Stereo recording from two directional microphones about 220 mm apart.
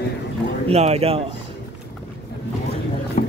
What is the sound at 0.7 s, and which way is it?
Speech, 30° right (ahead or behind).